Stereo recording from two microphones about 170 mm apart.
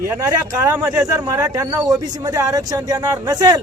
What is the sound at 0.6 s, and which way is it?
Speech, 15° right (ahead or behind).